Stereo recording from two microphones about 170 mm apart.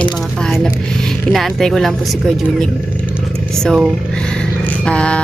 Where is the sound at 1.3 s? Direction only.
Centre (ahead or behind).